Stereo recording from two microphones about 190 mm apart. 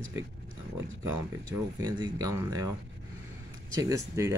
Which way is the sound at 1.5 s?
20° right (ahead or behind).